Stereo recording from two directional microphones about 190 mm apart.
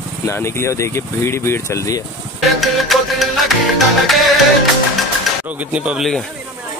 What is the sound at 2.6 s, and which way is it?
Music, centre (ahead or behind).